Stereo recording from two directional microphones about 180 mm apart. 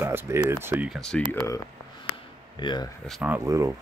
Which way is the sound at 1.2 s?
25° right (ahead or behind).